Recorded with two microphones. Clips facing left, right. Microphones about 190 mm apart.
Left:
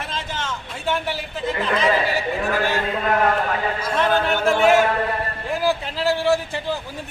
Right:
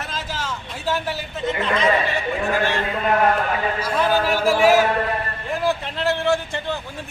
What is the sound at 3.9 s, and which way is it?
A man's voice, 5° right (ahead or behind).